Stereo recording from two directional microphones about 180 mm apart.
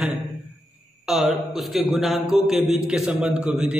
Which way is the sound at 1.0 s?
Centre (ahead or behind).